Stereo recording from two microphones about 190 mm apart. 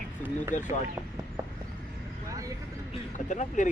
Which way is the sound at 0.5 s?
40° left (ahead or behind).